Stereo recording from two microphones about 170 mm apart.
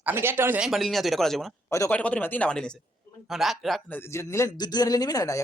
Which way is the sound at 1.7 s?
15° left (ahead or behind).